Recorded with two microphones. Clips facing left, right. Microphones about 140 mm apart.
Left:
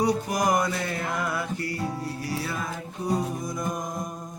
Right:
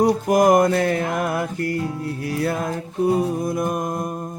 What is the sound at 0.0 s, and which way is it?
Music, 50° right (ahead or behind).